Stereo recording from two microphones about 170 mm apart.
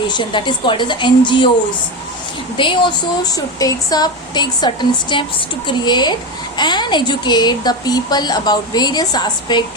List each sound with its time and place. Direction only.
0.1 s speech: 25° left (ahead or behind)
2.6 s speech: 25° left (ahead or behind)